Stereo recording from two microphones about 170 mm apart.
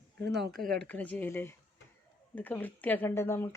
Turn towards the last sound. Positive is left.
turn(degrees=15)  # may be behind; listen again after turning